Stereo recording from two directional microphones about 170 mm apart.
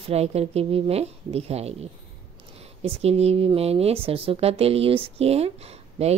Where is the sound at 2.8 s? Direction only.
35° right (ahead or behind).